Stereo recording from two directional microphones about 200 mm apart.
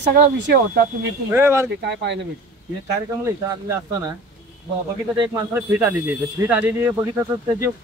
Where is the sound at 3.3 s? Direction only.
15° right (ahead or behind).